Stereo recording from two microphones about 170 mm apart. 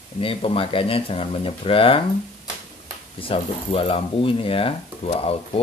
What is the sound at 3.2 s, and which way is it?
Speech, 35° left (ahead or behind).